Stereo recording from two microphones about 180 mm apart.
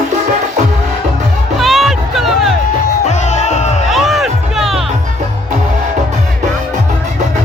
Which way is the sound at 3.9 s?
Centre (ahead or behind).